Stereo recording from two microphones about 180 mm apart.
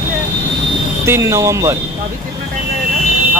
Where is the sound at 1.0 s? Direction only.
15° right (ahead or behind).